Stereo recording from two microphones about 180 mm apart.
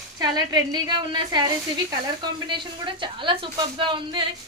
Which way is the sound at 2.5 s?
25° right (ahead or behind).